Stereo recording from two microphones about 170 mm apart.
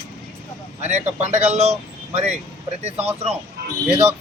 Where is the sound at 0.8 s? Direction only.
40° right (ahead or behind).